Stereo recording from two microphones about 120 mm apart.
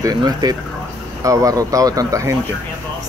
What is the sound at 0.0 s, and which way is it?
Speech, 30° right (ahead or behind).